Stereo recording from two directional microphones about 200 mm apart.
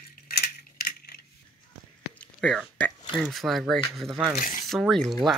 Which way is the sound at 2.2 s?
5° left (ahead or behind).